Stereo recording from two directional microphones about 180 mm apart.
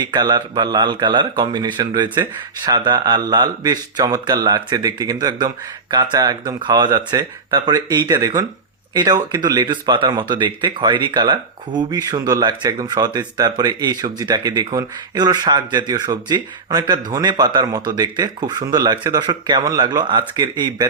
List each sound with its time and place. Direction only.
0.0 s speech: 20° right (ahead or behind)